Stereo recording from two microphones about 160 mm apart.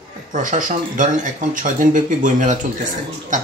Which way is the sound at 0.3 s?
55° right (ahead or behind).